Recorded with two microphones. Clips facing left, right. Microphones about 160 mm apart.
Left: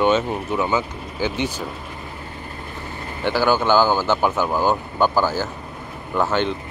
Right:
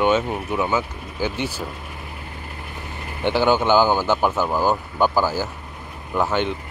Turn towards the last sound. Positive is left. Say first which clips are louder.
# left 1 dB
turn(degrees=-10)  # may be behind; listen again after turning